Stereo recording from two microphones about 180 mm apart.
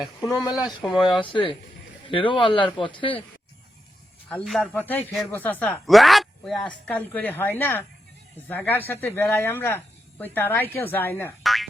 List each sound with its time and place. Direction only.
0.0 s speech: centre (ahead or behind)
1.2 s speech: 30° left (ahead or behind)
4.3 s speech: 5° left (ahead or behind)
11.4 s boing: centre (ahead or behind)